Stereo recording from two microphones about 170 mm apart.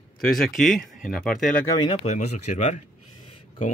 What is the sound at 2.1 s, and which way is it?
Speech, 40° left (ahead or behind).